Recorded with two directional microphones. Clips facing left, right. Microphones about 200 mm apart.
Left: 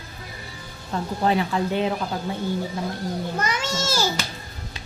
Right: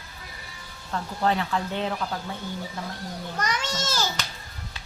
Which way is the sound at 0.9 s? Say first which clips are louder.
Left 3 dB; 15° left (ahead or behind).